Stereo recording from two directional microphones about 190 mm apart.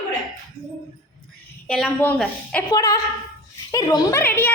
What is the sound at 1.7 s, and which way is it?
Speech, 5° left (ahead or behind).